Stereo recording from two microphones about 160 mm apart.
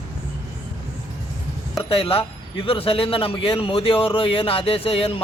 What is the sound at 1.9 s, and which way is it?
Speech, 35° left (ahead or behind).